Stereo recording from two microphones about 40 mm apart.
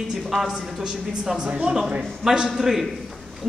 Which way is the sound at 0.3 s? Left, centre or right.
Centre.